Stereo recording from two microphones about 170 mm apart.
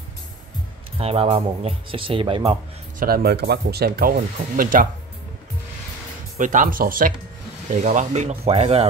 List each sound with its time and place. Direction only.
0.9 s speech: 35° right (ahead or behind)
3.0 s speech: 65° right (ahead or behind)
4.6 s speech: 55° right (ahead or behind)
6.3 s speech: 50° right (ahead or behind)
7.8 s speech: 45° right (ahead or behind)